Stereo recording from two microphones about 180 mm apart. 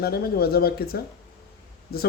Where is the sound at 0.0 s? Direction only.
60° left (ahead or behind).